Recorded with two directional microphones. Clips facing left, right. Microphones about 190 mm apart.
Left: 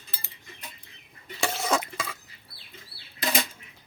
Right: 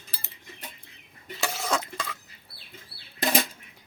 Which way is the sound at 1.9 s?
5° left (ahead or behind).